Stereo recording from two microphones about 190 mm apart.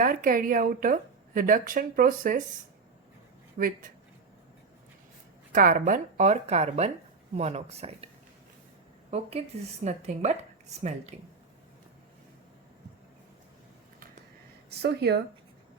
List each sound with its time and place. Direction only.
0.0 s a woman's voice: 45° right (ahead or behind)
3.6 s a woman's voice: 45° right (ahead or behind)
5.5 s a woman's voice: 45° right (ahead or behind)
14.7 s speech: 60° right (ahead or behind)